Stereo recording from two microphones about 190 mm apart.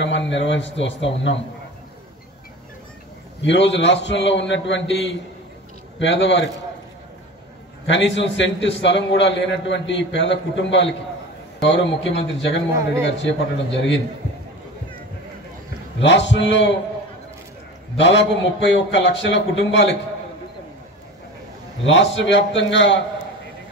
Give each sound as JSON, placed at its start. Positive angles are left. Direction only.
{"t": 0.0, "sound": "a man's voice", "side_deg": 70}
{"t": 3.4, "sound": "a man's voice", "side_deg": 70}
{"t": 7.8, "sound": "a man's voice", "side_deg": 70}
{"t": 16.0, "sound": "a man's voice", "side_deg": 70}
{"t": 17.9, "sound": "a man's voice", "side_deg": 70}
{"t": 21.8, "sound": "a man's voice", "side_deg": 75}